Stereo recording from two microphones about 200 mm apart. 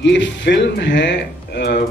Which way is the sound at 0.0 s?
65° left (ahead or behind).